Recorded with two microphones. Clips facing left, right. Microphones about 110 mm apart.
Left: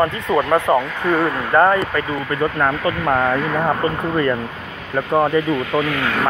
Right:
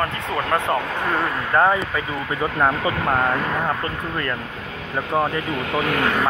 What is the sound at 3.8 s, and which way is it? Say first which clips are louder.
Speech: left 7 dB; 10° left (ahead or behind).